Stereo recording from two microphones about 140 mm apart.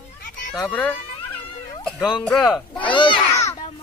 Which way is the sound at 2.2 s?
5° left (ahead or behind).